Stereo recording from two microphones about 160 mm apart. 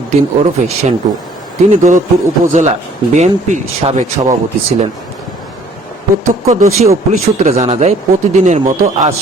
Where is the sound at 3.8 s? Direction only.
45° right (ahead or behind).